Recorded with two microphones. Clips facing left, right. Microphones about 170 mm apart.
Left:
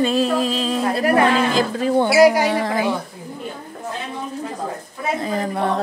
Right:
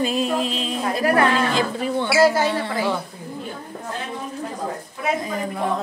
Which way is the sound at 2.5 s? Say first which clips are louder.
Left 3 dB; 90° left.